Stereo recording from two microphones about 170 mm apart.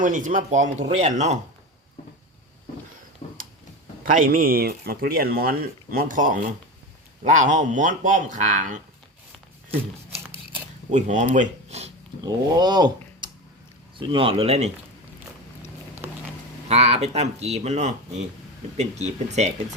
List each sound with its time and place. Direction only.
0.0 s speech: 50° right (ahead or behind)
3.2 s a sound: 35° left (ahead or behind)
4.0 s speech: 55° right (ahead or behind)
10.9 s speech: 45° right (ahead or behind)
12.2 s speech: 25° right (ahead or behind)
16.6 s speech: 40° right (ahead or behind)